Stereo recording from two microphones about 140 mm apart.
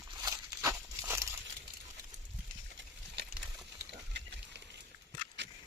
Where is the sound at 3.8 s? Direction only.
20° right (ahead or behind).